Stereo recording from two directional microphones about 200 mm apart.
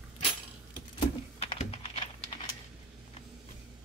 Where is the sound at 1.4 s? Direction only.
30° left (ahead or behind).